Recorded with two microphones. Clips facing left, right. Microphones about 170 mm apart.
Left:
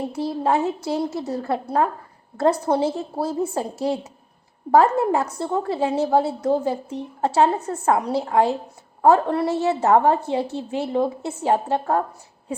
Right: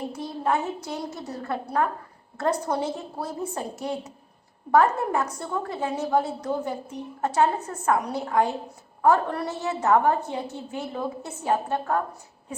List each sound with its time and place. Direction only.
0.2 s a woman's voice: 30° left (ahead or behind)